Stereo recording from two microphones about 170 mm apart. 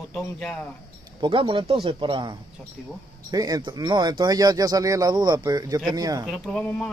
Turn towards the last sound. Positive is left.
turn(degrees=5)  # may be behind; listen again after turning